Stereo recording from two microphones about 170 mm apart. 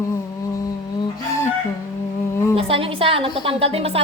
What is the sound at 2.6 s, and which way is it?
A woman's voice, 35° right (ahead or behind).